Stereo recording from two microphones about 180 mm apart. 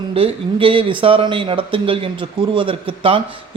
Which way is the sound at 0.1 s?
30° right (ahead or behind).